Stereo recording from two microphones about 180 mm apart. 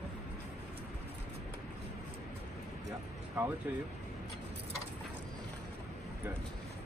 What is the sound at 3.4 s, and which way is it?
Speech, 10° right (ahead or behind).